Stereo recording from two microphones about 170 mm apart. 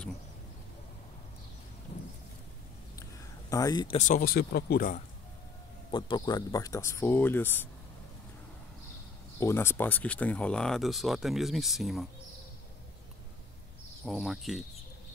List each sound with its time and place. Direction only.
3.0 s a sound: 20° left (ahead or behind)
3.9 s speech: 50° left (ahead or behind)
5.9 s speech: 25° left (ahead or behind)
9.4 s speech: 15° left (ahead or behind); by 12.1 s centre (ahead or behind)
14.0 s speech: centre (ahead or behind)